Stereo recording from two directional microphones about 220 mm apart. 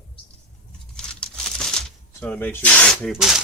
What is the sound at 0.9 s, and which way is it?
Crumpling, 5° left (ahead or behind).